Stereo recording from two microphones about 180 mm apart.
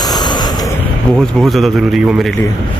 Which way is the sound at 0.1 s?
25° left (ahead or behind).